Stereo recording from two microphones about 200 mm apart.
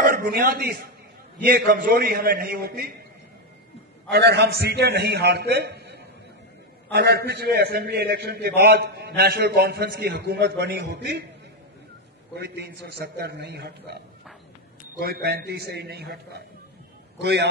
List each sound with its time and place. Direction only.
0.0 s a man's voice: 50° right (ahead or behind)
4.1 s a man's voice: 55° right (ahead or behind)
12.4 s a man's voice: 55° right (ahead or behind)